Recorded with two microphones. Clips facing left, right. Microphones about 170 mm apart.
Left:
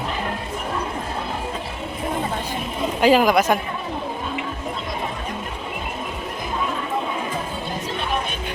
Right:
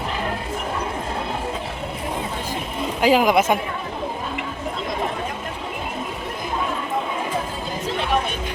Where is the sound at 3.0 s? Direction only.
10° right (ahead or behind).